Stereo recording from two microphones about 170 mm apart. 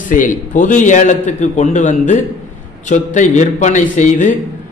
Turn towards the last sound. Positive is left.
turn(degrees=45)  # may be behind; listen again after turning